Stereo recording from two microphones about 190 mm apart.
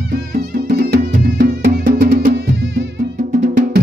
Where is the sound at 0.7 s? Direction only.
55° right (ahead or behind).